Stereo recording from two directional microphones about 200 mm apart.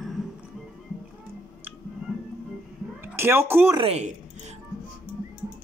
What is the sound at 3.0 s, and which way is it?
Speech, 10° right (ahead or behind).